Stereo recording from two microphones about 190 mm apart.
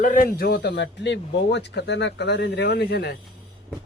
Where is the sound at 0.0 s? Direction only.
45° left (ahead or behind).